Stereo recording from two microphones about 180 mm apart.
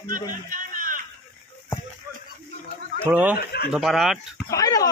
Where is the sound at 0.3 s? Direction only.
50° right (ahead or behind).